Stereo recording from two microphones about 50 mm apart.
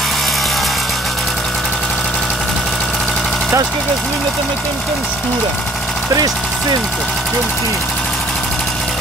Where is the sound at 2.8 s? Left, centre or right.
Centre.